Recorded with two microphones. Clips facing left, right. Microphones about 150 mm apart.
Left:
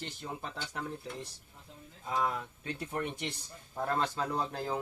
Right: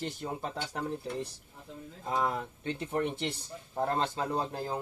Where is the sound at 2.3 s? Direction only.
30° right (ahead or behind).